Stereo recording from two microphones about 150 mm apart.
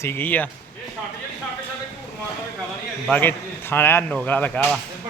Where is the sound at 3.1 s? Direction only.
10° left (ahead or behind).